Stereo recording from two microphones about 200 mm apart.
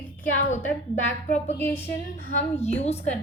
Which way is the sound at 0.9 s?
35° left (ahead or behind).